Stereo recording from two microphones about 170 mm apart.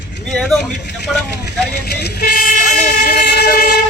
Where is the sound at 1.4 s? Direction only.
75° left (ahead or behind); by 3.2 s 50° left (ahead or behind).